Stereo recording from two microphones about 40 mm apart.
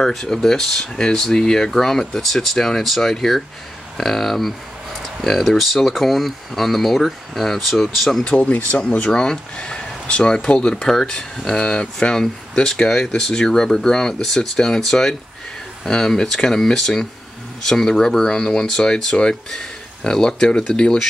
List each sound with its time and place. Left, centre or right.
0.0 s speech: centre
5.6 s speech: centre
9.1 s speech: left
11.5 s speech: left